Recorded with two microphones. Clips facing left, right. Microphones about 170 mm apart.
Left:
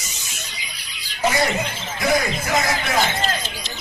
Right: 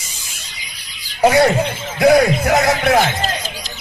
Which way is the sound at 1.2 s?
65° right (ahead or behind).